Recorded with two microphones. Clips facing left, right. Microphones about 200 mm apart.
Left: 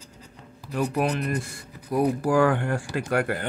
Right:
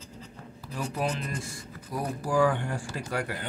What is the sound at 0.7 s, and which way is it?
Speech, 65° left (ahead or behind).